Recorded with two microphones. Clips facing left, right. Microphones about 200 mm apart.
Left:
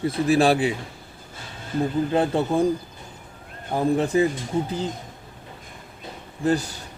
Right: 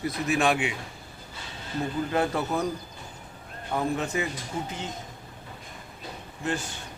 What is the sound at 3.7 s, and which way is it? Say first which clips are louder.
Speech: left 7 dB; 30° left (ahead or behind).